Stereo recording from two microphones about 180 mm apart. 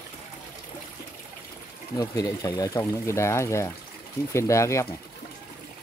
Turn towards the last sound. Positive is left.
turn(degrees=15)  # may be behind; listen again after turning